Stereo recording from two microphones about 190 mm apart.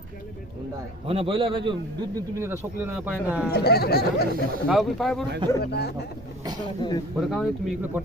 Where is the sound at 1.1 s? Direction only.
30° right (ahead or behind).